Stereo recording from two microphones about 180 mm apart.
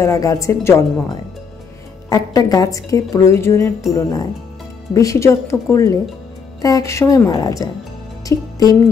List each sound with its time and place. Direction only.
0.0 s a woman's voice: 15° left (ahead or behind)
2.0 s a woman's voice: 20° left (ahead or behind)